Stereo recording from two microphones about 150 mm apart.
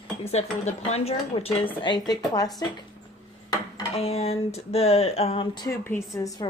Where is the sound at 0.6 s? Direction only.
45° left (ahead or behind).